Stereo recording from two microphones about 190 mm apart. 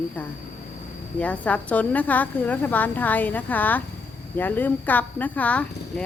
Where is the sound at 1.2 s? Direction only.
5° left (ahead or behind).